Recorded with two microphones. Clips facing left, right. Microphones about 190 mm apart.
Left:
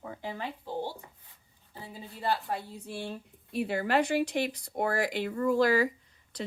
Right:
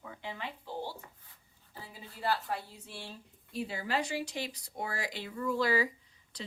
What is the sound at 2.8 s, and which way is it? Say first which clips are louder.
Speech: left 9 dB; 55° left (ahead or behind).